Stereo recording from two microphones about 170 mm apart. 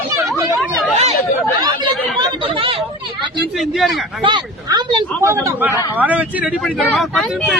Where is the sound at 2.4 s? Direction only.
30° right (ahead or behind).